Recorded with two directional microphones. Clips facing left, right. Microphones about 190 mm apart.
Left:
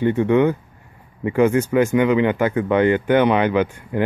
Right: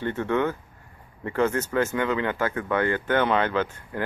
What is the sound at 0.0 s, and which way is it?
Speech, 15° left (ahead or behind).